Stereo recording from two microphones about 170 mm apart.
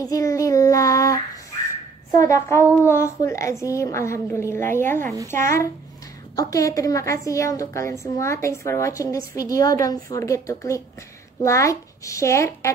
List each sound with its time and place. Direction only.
0.0 s child singing: 20° left (ahead or behind)
2.1 s a child's voice: 15° left (ahead or behind)
6.3 s a woman's voice: 20° left (ahead or behind)